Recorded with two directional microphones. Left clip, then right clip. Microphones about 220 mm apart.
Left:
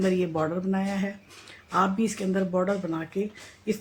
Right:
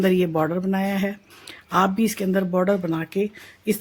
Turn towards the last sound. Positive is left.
turn(degrees=-50)  # may be behind; listen again after turning